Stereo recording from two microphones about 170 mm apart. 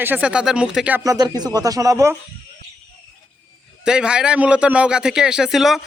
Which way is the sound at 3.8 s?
5° right (ahead or behind).